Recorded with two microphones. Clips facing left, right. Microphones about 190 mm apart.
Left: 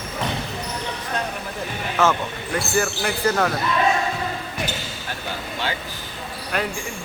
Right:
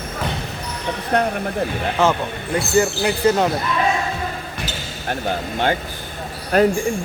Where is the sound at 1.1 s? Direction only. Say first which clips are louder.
Right 10 dB; 65° right (ahead or behind).